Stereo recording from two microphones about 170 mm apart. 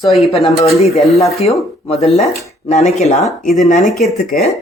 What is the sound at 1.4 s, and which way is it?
Speech, 35° left (ahead or behind).